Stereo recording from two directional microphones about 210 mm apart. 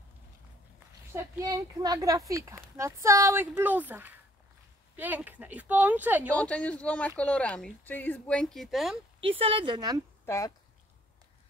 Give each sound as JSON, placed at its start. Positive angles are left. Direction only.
{"t": 1.1, "sound": "speech", "side_deg": -15}
{"t": 6.3, "sound": "speech", "side_deg": 5}
{"t": 9.4, "sound": "a woman's voice", "side_deg": -25}
{"t": 10.2, "sound": "speech", "side_deg": 15}